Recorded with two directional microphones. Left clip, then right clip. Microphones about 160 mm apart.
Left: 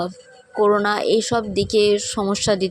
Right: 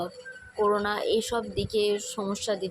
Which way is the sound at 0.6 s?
45° left (ahead or behind).